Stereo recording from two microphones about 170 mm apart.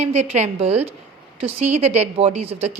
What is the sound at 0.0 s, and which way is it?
Speech, 40° right (ahead or behind).